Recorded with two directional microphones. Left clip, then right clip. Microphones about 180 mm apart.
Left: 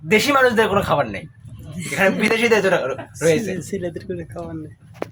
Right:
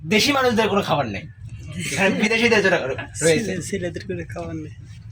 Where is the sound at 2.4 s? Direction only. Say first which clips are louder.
Even; 30° left (ahead or behind).